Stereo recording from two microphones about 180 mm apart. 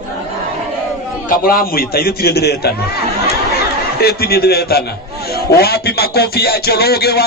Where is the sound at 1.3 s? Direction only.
55° left (ahead or behind).